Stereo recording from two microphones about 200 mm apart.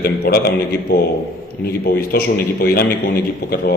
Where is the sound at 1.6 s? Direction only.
50° left (ahead or behind).